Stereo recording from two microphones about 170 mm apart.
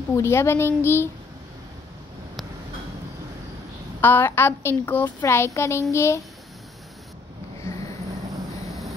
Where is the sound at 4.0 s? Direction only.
10° left (ahead or behind).